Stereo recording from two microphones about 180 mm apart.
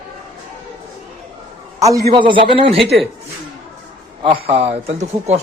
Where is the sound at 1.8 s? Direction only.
20° right (ahead or behind).